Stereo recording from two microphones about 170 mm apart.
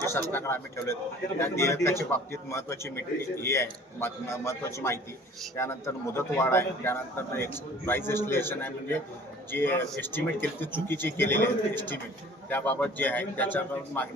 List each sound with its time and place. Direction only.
0.0 s a man's voice: 15° left (ahead or behind)